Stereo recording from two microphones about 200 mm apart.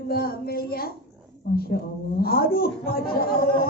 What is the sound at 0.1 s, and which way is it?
Speech, 50° left (ahead or behind).